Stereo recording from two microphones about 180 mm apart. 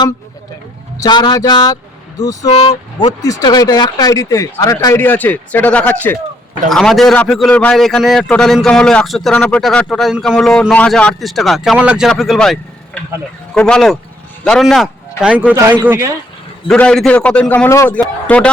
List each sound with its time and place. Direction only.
0.9 s a man's voice: 25° left (ahead or behind); by 16.1 s 15° right (ahead or behind)
16.6 s a man's voice: 5° left (ahead or behind)